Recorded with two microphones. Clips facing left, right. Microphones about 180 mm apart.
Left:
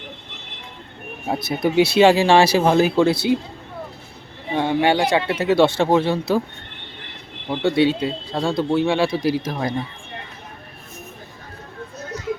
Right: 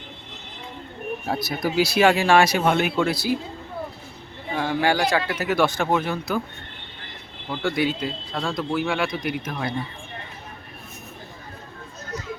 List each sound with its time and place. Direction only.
1.3 s speech: 25° left (ahead or behind)
4.5 s speech: 25° left (ahead or behind)
7.5 s speech: 25° left (ahead or behind)